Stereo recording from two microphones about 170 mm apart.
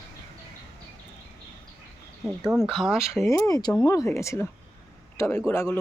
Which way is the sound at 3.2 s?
15° left (ahead or behind).